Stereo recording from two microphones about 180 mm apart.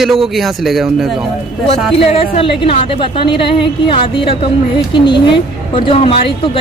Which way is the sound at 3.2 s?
30° left (ahead or behind).